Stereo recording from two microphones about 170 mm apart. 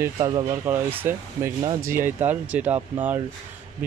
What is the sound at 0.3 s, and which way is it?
Speech, 30° right (ahead or behind).